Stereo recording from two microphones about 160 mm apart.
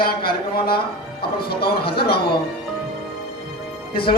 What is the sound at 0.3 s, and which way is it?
Speech, 75° left (ahead or behind).